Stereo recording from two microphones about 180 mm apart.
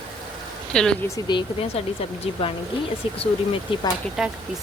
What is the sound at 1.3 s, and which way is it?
Speech, 25° left (ahead or behind).